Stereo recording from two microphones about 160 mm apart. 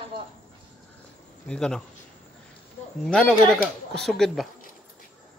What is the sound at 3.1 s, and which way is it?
Speech, 5° left (ahead or behind).